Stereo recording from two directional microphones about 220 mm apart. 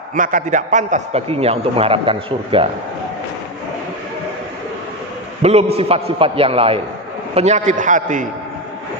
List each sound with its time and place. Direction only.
0.1 s a man's voice: 35° right (ahead or behind)
5.4 s a man's voice: 25° right (ahead or behind)